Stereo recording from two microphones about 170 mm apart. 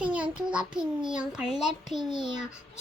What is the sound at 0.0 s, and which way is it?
A child's voice, 5° right (ahead or behind).